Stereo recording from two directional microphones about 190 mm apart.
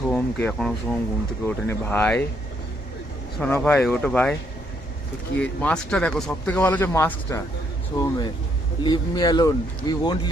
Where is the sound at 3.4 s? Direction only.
5° left (ahead or behind).